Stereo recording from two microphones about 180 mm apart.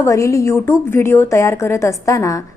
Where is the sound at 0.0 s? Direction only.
15° left (ahead or behind).